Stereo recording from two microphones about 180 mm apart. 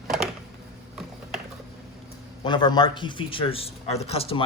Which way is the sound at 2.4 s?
25° left (ahead or behind).